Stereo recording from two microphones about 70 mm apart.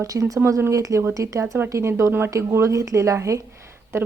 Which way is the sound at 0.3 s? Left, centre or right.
Right.